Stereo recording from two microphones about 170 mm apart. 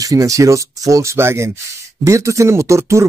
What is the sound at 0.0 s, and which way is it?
Speech, 20° right (ahead or behind).